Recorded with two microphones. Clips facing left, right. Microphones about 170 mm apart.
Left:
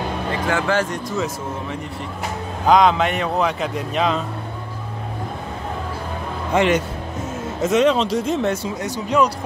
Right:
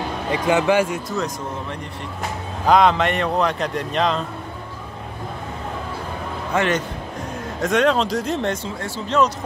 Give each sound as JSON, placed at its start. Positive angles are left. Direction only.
{"t": 0.5, "sound": "speech", "side_deg": -15}
{"t": 2.6, "sound": "a man's voice", "side_deg": 0}
{"t": 6.5, "sound": "speech", "side_deg": 15}
{"t": 7.6, "sound": "a man's voice", "side_deg": 0}
{"t": 8.6, "sound": "speech", "side_deg": 15}